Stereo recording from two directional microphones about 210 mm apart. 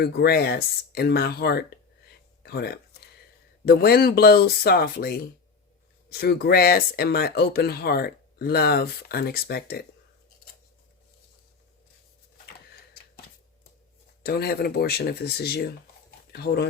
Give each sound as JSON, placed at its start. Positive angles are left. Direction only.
{"t": 0.0, "sound": "speech", "side_deg": 50}
{"t": 2.4, "sound": "a sound", "side_deg": 50}
{"t": 3.7, "sound": "speech", "side_deg": 45}
{"t": 14.2, "sound": "speech", "side_deg": 45}